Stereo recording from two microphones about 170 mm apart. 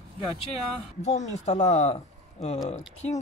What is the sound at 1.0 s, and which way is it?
Speech, 45° left (ahead or behind).